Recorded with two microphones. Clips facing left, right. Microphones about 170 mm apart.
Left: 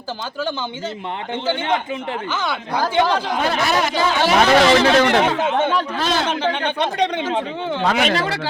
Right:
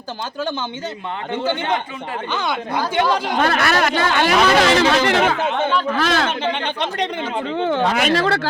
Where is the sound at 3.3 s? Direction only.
70° right (ahead or behind).